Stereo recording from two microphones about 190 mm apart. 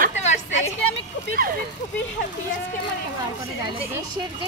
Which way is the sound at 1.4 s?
50° right (ahead or behind).